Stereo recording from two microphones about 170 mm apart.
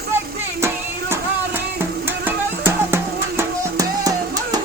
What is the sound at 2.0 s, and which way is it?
Music, 15° right (ahead or behind).